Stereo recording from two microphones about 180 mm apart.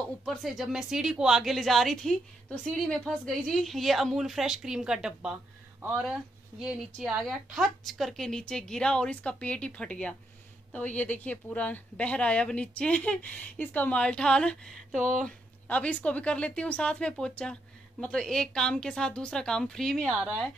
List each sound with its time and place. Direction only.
0.2 s speech: centre (ahead or behind)
15.0 s speech: 45° right (ahead or behind)
15.2 s speech: 5° left (ahead or behind)